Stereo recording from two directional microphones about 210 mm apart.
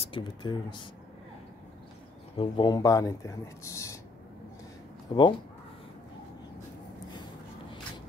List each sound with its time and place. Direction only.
0.0 s speech: 25° left (ahead or behind)
2.3 s speech: 25° left (ahead or behind)
5.1 s speech: 20° left (ahead or behind)